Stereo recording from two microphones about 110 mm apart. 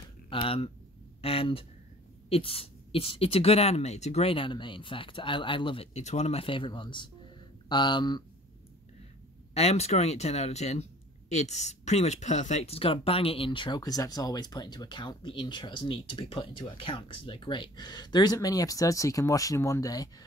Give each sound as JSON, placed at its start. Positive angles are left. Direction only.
{"t": 0.3, "sound": "speech", "side_deg": 55}
{"t": 5.9, "sound": "speech", "side_deg": 80}
{"t": 6.4, "sound": "speech", "side_deg": 50}
{"t": 9.5, "sound": "speech", "side_deg": 75}